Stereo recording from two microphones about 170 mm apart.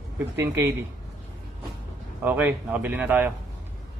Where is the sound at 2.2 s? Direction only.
10° right (ahead or behind).